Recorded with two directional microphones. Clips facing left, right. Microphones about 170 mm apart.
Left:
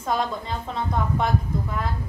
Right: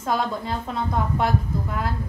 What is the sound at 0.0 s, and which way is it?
A woman's voice, 5° right (ahead or behind).